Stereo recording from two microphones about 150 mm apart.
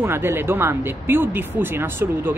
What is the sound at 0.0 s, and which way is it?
Speech, 15° right (ahead or behind).